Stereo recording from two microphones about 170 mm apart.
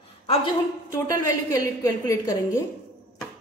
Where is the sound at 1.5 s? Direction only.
20° left (ahead or behind).